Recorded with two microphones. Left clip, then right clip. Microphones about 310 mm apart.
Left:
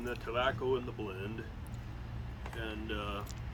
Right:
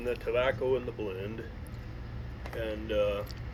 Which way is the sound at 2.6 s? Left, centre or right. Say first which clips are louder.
Right 10 dB; left.